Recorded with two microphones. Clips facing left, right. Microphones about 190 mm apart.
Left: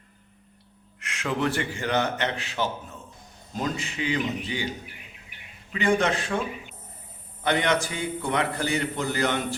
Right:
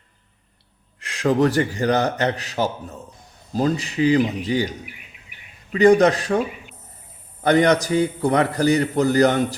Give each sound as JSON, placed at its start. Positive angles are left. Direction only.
{"t": 0.9, "sound": "a man's voice", "side_deg": -35}
{"t": 5.7, "sound": "a man's voice", "side_deg": -40}
{"t": 7.4, "sound": "a man's voice", "side_deg": -40}